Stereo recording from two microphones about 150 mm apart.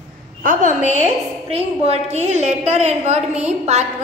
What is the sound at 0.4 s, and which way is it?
Speech, 60° right (ahead or behind).